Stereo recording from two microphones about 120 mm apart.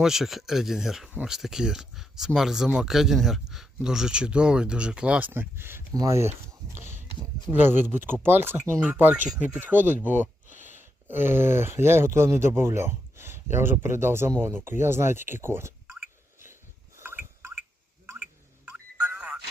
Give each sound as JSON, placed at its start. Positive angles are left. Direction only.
{"t": 0.0, "sound": "speech", "side_deg": -5}
{"t": 6.7, "sound": "speech", "side_deg": -90}
{"t": 7.6, "sound": "speech", "side_deg": -15}
{"t": 10.5, "sound": "a sound", "side_deg": 90}
{"t": 10.8, "sound": "speech", "side_deg": -15}
{"t": 17.0, "sound": "a sound", "side_deg": -20}